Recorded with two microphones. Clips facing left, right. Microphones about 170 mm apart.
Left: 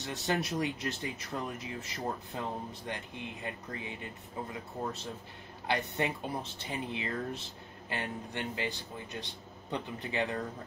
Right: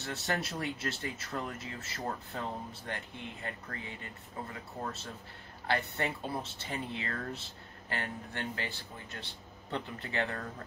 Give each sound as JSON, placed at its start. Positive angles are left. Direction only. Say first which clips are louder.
{"t": 0.0, "sound": "speech", "louder": "left 2 dB", "side_deg": 20}